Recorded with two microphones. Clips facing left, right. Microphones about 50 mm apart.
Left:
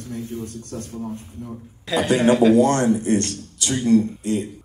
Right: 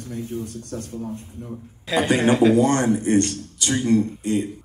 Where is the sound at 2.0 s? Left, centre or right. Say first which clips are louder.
Left 2 dB; right.